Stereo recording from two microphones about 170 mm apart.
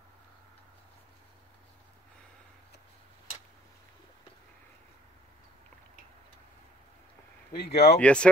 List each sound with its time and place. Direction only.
7.5 s speech: 75° left (ahead or behind)
8.0 s speech: 5° left (ahead or behind)